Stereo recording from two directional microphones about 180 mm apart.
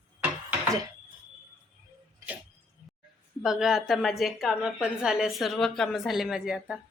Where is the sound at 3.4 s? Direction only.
Centre (ahead or behind).